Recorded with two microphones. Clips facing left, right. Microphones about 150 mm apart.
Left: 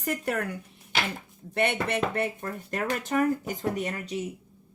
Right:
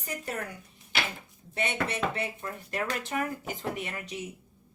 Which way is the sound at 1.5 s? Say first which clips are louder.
Left 5 dB; 55° left (ahead or behind).